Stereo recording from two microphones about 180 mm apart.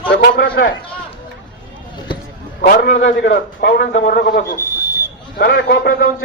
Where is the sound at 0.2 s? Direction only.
55° left (ahead or behind).